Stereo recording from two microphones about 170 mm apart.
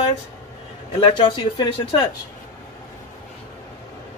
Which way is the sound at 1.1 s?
25° left (ahead or behind).